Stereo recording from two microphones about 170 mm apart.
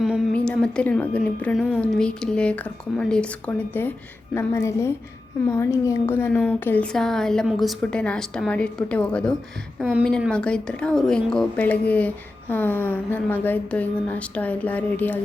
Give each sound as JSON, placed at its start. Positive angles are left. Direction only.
{"t": 0.3, "sound": "a woman's voice", "side_deg": 5}